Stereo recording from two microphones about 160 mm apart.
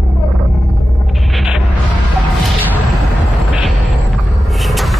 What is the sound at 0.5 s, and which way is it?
Rumble, centre (ahead or behind).